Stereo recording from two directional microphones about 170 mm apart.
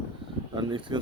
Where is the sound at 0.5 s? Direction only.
30° right (ahead or behind).